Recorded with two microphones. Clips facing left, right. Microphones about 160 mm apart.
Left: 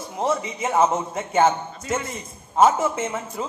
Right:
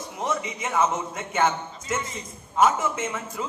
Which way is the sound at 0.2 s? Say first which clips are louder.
Left 5 dB; 30° left (ahead or behind).